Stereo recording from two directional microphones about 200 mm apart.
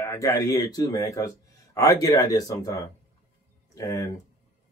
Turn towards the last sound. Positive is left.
turn(degrees=15)  # may be behind; listen again after turning